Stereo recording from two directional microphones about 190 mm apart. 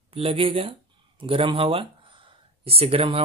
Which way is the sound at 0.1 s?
30° right (ahead or behind).